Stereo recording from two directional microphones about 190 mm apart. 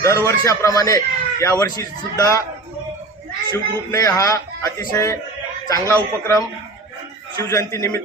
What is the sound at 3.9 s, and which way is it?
A man's voice, 15° left (ahead or behind).